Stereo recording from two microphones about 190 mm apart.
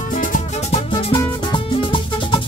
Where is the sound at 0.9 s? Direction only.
25° left (ahead or behind).